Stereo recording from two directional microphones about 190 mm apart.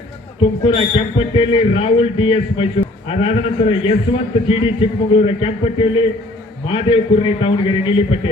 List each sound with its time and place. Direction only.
0.4 s a man's voice: 30° left (ahead or behind)